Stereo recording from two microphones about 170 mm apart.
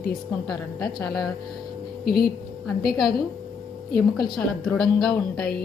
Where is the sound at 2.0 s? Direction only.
65° left (ahead or behind).